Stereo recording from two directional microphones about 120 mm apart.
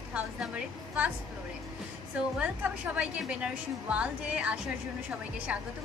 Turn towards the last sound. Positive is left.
turn(degrees=-10)  # may be behind; listen again after turning